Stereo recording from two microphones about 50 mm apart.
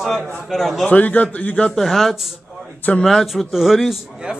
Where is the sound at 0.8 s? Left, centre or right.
Left.